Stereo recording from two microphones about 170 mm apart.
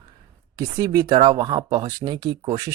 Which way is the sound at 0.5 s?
20° right (ahead or behind).